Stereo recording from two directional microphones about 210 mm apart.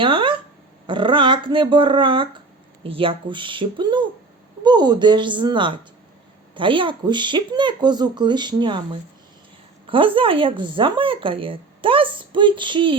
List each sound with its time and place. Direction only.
0.0 s speech: 25° right (ahead or behind)